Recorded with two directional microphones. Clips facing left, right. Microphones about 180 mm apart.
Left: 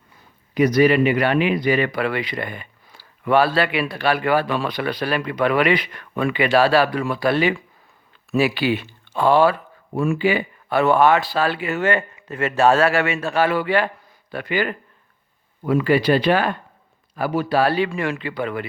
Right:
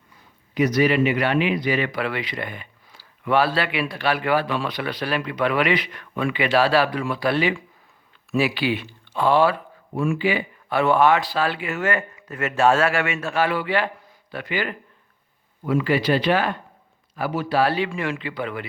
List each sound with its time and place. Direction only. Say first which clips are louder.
0.5 s a man's voice: left 4 dB; 50° left (ahead or behind)